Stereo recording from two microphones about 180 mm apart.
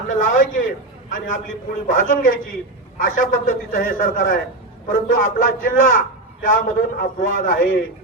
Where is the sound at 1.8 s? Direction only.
50° left (ahead or behind).